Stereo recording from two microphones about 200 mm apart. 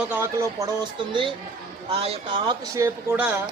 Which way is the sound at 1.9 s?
30° right (ahead or behind).